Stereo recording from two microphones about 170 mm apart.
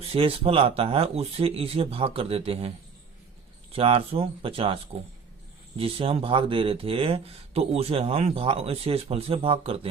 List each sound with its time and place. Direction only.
0.0 s speech: 35° right (ahead or behind)